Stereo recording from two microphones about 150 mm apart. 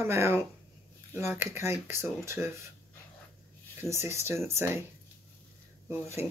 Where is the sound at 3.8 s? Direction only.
15° right (ahead or behind).